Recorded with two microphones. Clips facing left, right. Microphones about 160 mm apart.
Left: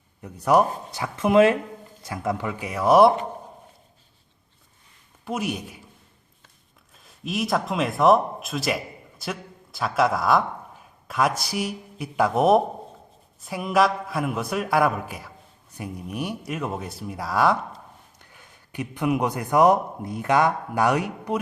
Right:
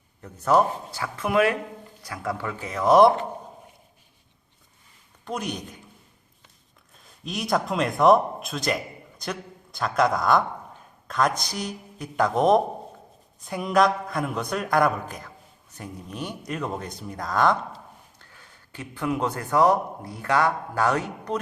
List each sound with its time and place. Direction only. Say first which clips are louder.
0.2 s speech: left 1 dB; 10° left (ahead or behind)
5.2 s a man's voice: left 3 dB; 5° left (ahead or behind)
6.9 s a man's voice: left 4 dB; centre (ahead or behind)